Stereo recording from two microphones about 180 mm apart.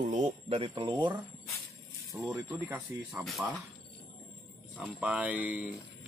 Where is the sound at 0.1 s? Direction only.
35° right (ahead or behind).